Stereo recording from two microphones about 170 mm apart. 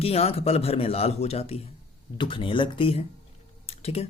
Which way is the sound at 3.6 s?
35° left (ahead or behind).